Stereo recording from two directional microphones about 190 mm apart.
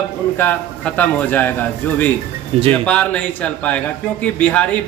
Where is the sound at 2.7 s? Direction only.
5° left (ahead or behind).